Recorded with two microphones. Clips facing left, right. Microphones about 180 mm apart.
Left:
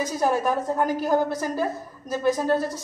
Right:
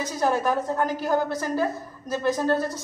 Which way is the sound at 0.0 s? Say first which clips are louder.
Left 1 dB; 5° left (ahead or behind).